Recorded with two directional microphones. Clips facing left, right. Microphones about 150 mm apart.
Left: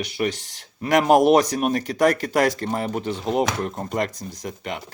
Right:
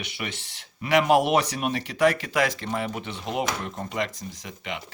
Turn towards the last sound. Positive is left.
turn(degrees=45)  # may be behind; listen again after turning